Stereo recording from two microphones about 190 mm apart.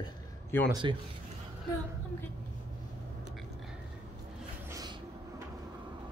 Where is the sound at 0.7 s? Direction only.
25° right (ahead or behind).